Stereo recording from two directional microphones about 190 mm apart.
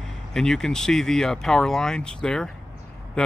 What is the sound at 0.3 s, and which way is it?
Speech, centre (ahead or behind).